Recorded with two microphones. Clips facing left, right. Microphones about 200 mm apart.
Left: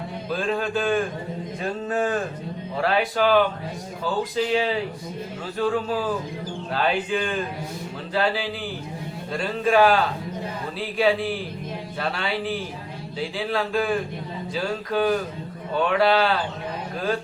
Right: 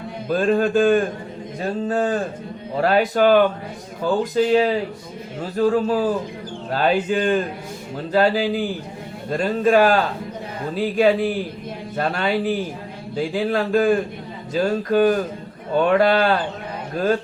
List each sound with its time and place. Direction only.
0.3 s speech: 45° right (ahead or behind)
1.8 s a man's voice: 30° right (ahead or behind); by 4.2 s 50° right (ahead or behind)
5.5 s a man's voice: 40° right (ahead or behind)